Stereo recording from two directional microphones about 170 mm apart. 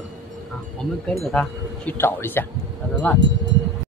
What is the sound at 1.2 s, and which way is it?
Speech, 5° left (ahead or behind).